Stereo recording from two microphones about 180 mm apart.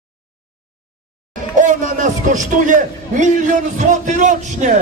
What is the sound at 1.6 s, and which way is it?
A man's voice, 45° right (ahead or behind).